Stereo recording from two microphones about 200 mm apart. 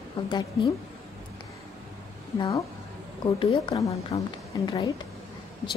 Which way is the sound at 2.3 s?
15° left (ahead or behind).